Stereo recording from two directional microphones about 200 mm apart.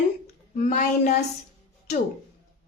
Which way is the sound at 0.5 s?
40° left (ahead or behind).